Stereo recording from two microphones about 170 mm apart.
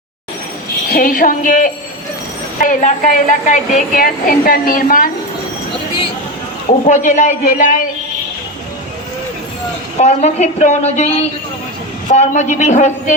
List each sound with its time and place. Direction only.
0.9 s a man's voice: 55° left (ahead or behind)
6.8 s a man's voice: 45° left (ahead or behind)
10.0 s a woman's voice: 40° left (ahead or behind)